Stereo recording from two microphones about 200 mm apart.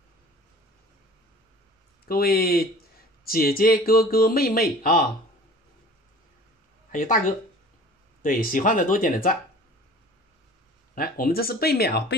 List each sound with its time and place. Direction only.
2.0 s speech: 50° left (ahead or behind)
6.9 s speech: 40° left (ahead or behind)
11.0 s speech: 50° left (ahead or behind)